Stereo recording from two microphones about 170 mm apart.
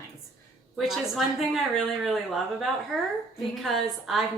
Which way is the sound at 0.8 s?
Centre (ahead or behind).